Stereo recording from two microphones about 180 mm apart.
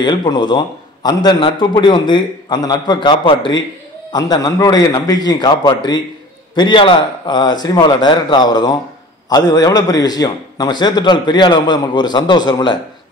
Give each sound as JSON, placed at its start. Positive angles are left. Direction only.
{"t": 0.0, "sound": "a man's voice", "side_deg": 25}